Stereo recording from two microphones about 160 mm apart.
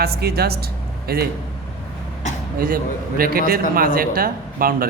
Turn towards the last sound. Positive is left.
turn(degrees=-65)  # may be behind; listen again after turning